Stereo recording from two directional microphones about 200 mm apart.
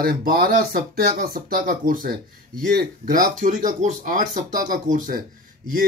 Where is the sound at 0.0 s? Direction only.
50° right (ahead or behind).